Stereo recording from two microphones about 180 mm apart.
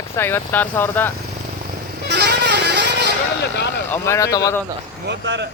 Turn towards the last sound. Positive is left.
turn(degrees=-75)  # may be behind; listen again after turning